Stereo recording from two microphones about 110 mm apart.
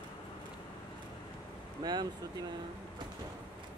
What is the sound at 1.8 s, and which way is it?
Speech, 40° right (ahead or behind).